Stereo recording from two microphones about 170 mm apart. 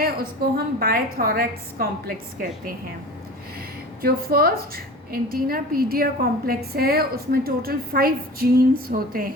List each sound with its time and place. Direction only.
0.0 s a woman's voice: 60° right (ahead or behind)
4.0 s a woman's voice: 60° right (ahead or behind)